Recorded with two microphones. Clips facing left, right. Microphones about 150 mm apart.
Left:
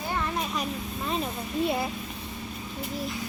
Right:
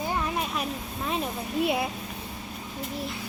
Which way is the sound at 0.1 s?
5° right (ahead or behind).